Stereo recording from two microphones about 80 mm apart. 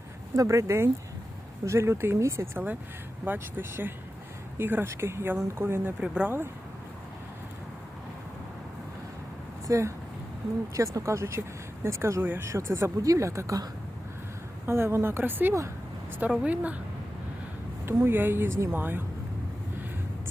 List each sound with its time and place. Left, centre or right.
0.3 s speech: right
6.0 s a woman's voice: centre
9.6 s speech: right
10.9 s speech: right
14.7 s a woman's voice: right
17.8 s speech: right